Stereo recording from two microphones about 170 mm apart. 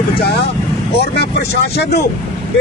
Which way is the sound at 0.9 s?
70° left (ahead or behind).